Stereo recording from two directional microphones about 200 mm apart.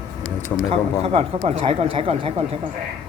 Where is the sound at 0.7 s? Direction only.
30° right (ahead or behind).